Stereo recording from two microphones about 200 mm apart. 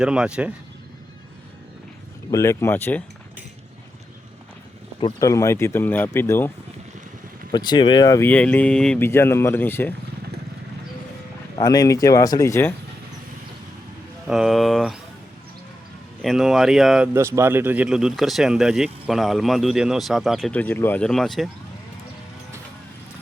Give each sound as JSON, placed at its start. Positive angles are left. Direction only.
{"t": 0.0, "sound": "speech", "side_deg": -5}
{"t": 2.3, "sound": "speech", "side_deg": 15}
{"t": 4.9, "sound": "speech", "side_deg": 20}
{"t": 7.5, "sound": "speech", "side_deg": 20}
{"t": 11.5, "sound": "speech", "side_deg": 20}
{"t": 14.3, "sound": "speech", "side_deg": 0}
{"t": 16.2, "sound": "speech", "side_deg": 0}
{"t": 17.2, "sound": "speech", "side_deg": -15}